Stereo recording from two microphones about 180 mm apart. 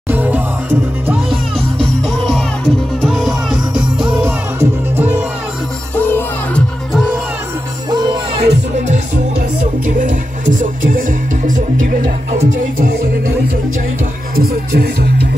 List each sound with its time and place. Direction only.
0.1 s music: 10° right (ahead or behind)
1.3 s music: centre (ahead or behind)
5.9 s music: 10° left (ahead or behind)
7.9 s music: 25° right (ahead or behind)
8.7 s music: 40° right (ahead or behind)
14.3 s music: 60° right (ahead or behind)